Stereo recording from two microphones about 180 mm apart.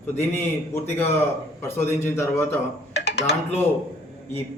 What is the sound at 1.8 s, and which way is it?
Speech, 15° left (ahead or behind).